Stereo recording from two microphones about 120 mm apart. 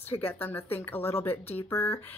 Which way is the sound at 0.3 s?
15° left (ahead or behind).